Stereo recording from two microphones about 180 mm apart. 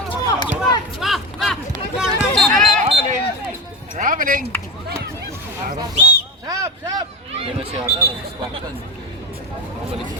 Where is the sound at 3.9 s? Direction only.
50° right (ahead or behind).